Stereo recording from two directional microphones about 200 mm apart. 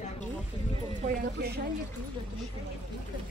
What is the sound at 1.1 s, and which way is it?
Speech, 55° right (ahead or behind).